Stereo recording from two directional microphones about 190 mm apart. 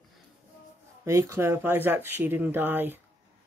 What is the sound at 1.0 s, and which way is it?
Speech, 15° right (ahead or behind).